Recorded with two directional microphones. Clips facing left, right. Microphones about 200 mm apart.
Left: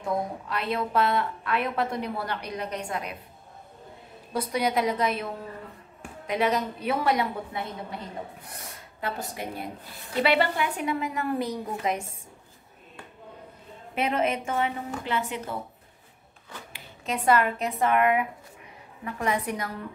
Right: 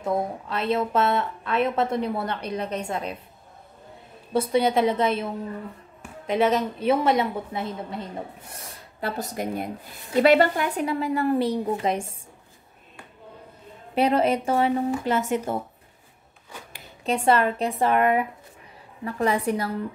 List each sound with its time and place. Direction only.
0.0 s a woman's voice: 25° right (ahead or behind)
4.3 s a woman's voice: 25° right (ahead or behind)
8.7 s a woman's voice: 40° right (ahead or behind)
13.9 s a woman's voice: 35° right (ahead or behind)
17.0 s a woman's voice: 30° right (ahead or behind)